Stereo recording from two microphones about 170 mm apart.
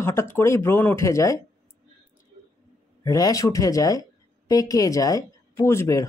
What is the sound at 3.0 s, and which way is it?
Speech, 20° left (ahead or behind).